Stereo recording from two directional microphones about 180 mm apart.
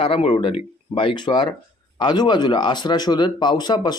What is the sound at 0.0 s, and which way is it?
Speech, 30° left (ahead or behind).